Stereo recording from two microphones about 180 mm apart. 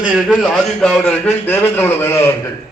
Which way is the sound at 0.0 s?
5° right (ahead or behind).